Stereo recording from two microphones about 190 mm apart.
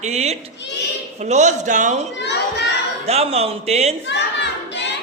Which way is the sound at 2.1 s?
65° left (ahead or behind).